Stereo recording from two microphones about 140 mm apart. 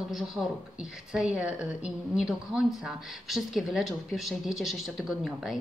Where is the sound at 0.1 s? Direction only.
Centre (ahead or behind).